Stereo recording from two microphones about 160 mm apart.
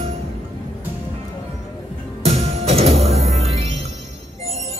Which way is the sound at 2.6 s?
40° right (ahead or behind).